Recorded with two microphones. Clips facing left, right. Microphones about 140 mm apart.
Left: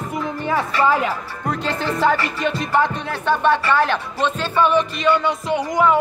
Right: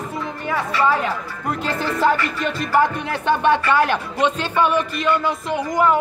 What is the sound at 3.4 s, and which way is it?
Speech, 15° right (ahead or behind).